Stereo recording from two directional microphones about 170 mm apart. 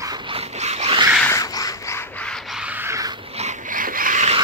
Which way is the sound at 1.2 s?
20° left (ahead or behind).